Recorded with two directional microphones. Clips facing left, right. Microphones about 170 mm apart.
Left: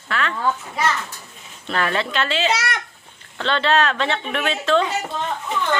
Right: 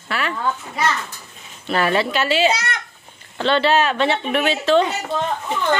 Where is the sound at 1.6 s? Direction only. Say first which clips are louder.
Right 4 dB; 5° right (ahead or behind).